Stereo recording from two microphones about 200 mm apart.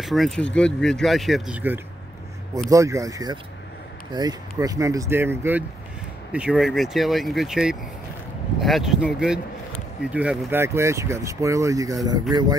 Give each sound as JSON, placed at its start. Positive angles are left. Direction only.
{"t": 0.0, "sound": "speech", "side_deg": 0}